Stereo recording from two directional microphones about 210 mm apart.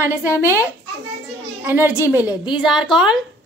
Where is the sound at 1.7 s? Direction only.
10° right (ahead or behind).